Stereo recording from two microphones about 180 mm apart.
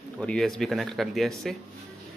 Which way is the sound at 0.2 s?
5° left (ahead or behind).